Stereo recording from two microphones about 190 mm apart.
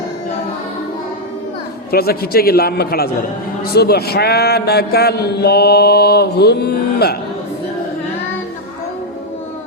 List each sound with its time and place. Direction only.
1.9 s a man's voice: 55° left (ahead or behind)